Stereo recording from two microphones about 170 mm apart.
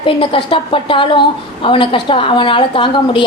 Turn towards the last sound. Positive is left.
turn(degrees=30)  # may be behind; listen again after turning